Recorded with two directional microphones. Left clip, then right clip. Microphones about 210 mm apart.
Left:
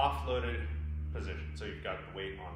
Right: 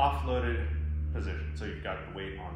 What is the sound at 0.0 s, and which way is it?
A man's voice, 30° left (ahead or behind).